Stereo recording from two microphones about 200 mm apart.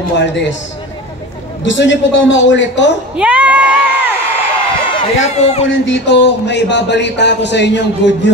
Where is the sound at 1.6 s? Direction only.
65° left (ahead or behind).